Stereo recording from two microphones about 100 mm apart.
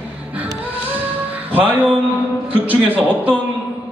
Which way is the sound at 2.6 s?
15° right (ahead or behind).